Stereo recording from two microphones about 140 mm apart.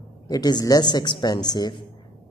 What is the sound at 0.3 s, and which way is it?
Speech, 30° left (ahead or behind).